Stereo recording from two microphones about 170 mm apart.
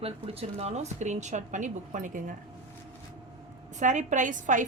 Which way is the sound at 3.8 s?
45° right (ahead or behind).